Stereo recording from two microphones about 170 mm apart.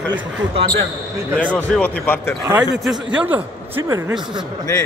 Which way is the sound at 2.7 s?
Centre (ahead or behind).